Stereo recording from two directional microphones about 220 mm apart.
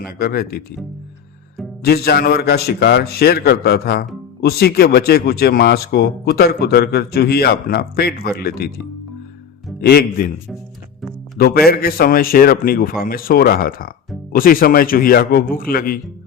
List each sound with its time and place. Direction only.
0.0 s speech: 45° left (ahead or behind)
1.8 s speech: 45° left (ahead or behind)
9.8 s speech: 45° left (ahead or behind)
11.3 s speech: 45° left (ahead or behind)